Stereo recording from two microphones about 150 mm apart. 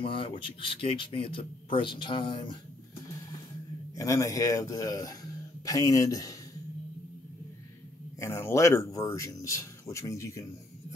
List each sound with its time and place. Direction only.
0.0 s speech: 35° left (ahead or behind)
3.9 s speech: 20° left (ahead or behind)
8.2 s speech: 20° left (ahead or behind)